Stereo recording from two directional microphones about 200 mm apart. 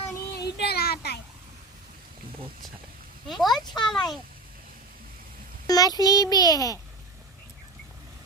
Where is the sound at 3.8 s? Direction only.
20° left (ahead or behind).